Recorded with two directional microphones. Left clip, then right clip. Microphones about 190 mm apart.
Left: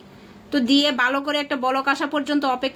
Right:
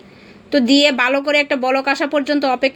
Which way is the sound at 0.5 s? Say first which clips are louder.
Right 6 dB; 5° right (ahead or behind).